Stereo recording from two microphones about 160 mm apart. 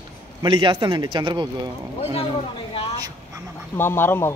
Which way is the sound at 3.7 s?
15° left (ahead or behind).